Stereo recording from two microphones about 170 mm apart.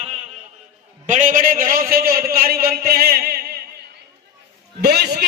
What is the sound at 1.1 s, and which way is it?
A man's voice, 50° right (ahead or behind).